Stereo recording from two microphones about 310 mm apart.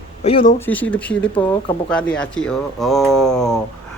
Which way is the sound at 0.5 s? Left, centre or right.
Centre.